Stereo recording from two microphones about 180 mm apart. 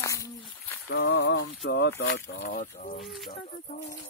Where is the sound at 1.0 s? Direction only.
80° left.